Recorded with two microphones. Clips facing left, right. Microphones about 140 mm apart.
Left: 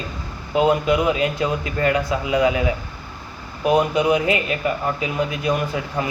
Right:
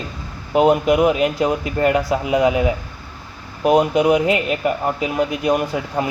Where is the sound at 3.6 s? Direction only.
60° right (ahead or behind).